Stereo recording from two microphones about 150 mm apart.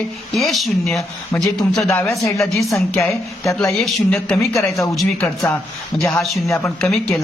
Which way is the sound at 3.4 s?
20° left (ahead or behind).